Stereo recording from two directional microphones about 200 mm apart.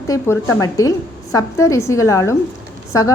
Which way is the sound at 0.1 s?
15° left (ahead or behind).